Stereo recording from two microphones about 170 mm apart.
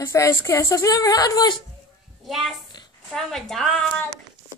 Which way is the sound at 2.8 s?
25° left (ahead or behind).